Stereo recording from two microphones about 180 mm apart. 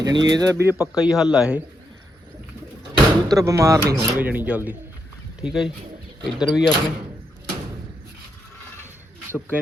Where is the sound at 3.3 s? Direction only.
15° right (ahead or behind); by 6.8 s centre (ahead or behind).